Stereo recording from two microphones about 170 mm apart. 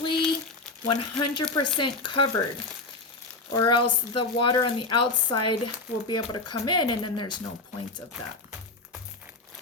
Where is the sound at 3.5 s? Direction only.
30° left (ahead or behind).